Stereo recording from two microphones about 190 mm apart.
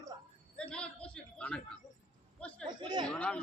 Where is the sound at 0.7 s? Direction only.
5° left (ahead or behind).